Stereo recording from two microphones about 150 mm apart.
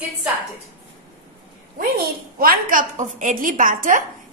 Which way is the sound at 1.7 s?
75° right (ahead or behind).